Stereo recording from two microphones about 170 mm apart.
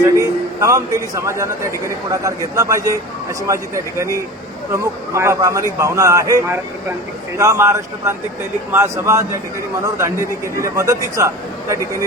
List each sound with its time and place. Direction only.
0.0 s a man's voice: 20° right (ahead or behind)